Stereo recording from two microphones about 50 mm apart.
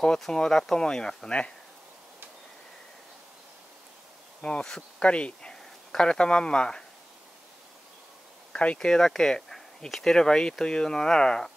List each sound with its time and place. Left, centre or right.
0.3 s speech: centre
4.4 s insect: left
4.6 s speech: centre
8.7 s speech: centre